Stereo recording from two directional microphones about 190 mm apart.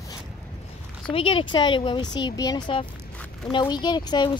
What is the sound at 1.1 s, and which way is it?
Speech, 30° left (ahead or behind).